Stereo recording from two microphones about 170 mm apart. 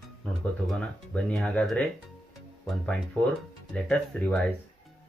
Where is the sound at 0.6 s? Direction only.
5° left (ahead or behind).